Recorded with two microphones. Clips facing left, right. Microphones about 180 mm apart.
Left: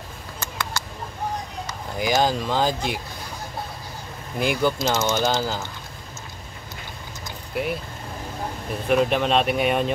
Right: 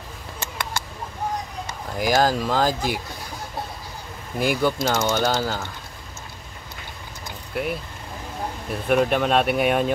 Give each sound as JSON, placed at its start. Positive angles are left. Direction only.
{"t": 0.4, "sound": "a sound", "side_deg": -20}
{"t": 2.0, "sound": "speech", "side_deg": 0}
{"t": 4.4, "sound": "speech", "side_deg": 0}
{"t": 7.5, "sound": "speech", "side_deg": 0}
{"t": 8.8, "sound": "speech", "side_deg": 0}